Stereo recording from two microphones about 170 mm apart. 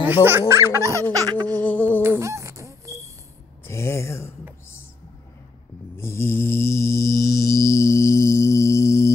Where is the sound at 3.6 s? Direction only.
15° left (ahead or behind).